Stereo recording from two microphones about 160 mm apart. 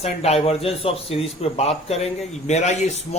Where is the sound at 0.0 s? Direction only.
40° left (ahead or behind).